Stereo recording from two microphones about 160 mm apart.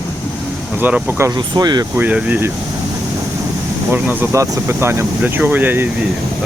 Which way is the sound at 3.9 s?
10° right (ahead or behind).